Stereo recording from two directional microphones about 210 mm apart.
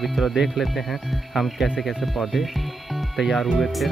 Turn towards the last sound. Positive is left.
turn(degrees=0)  # may be behind; listen again after turning